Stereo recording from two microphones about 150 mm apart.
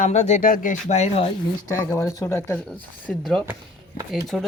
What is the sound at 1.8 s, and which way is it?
Speech, 20° left (ahead or behind).